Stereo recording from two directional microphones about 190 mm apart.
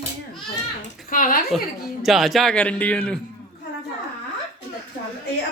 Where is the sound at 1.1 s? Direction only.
45° left (ahead or behind).